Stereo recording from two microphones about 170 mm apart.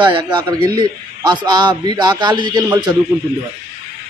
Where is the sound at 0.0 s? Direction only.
25° right (ahead or behind).